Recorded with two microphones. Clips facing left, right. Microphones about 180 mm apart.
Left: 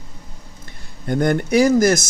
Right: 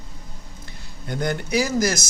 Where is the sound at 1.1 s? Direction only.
50° left (ahead or behind).